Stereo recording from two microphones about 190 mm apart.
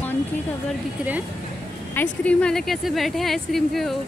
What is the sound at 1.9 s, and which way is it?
Speech, 10° left (ahead or behind).